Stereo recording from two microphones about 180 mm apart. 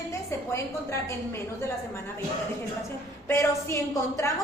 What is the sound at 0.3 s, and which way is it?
A woman's voice, 15° left (ahead or behind).